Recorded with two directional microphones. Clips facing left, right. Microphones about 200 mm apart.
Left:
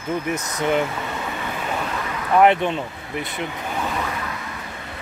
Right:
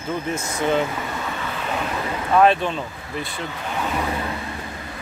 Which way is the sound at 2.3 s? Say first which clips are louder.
Left 1 dB; 20° left (ahead or behind).